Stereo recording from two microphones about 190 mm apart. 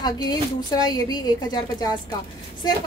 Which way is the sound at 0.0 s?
20° left (ahead or behind).